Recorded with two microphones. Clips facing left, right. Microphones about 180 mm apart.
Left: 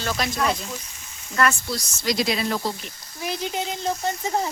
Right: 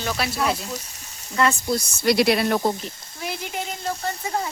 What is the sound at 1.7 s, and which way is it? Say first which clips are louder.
Speech: right 6 dB; 60° right (ahead or behind).